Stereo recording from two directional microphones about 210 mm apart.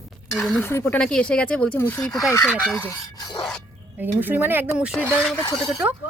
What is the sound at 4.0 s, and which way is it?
Speech, 10° right (ahead or behind).